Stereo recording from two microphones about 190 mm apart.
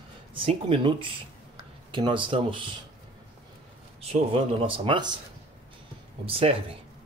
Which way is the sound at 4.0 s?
30° right (ahead or behind).